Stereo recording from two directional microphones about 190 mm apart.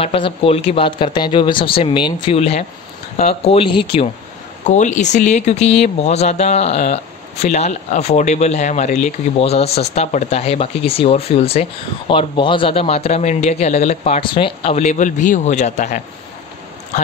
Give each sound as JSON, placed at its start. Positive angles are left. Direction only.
{"t": 0.0, "sound": "speech", "side_deg": 30}
{"t": 4.6, "sound": "speech", "side_deg": 40}